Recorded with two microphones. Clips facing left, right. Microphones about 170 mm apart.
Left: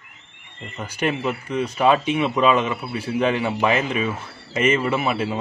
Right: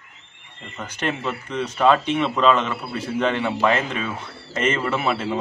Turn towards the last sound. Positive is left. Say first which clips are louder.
# left 1 dB
turn(degrees=10)  # may be behind; listen again after turning